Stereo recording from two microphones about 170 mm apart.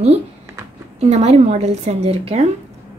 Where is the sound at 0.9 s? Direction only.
40° right (ahead or behind).